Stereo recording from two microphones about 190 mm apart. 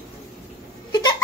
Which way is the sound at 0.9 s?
20° left (ahead or behind).